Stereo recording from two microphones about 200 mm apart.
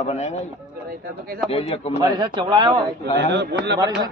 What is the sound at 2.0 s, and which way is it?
Speech, 20° right (ahead or behind).